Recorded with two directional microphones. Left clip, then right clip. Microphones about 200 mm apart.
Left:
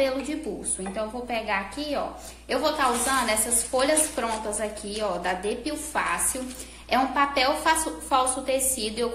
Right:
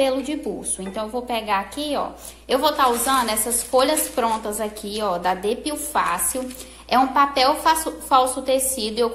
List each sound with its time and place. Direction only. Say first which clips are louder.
0.9 s a woman's voice: right 4 dB; 30° right (ahead or behind)